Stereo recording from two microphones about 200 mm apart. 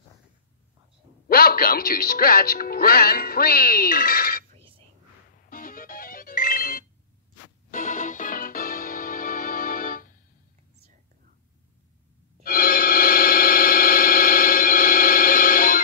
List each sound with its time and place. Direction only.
1.3 s speech: 45° left (ahead or behind)
5.5 s music: 45° left (ahead or behind)
12.4 s a sound: 45° left (ahead or behind)